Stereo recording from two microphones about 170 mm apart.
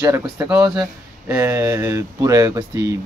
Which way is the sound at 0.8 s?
15° right (ahead or behind).